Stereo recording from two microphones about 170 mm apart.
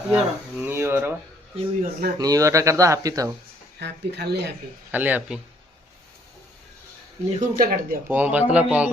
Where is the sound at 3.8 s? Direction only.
75° right (ahead or behind).